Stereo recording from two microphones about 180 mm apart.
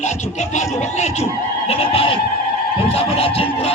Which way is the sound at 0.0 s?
40° left (ahead or behind).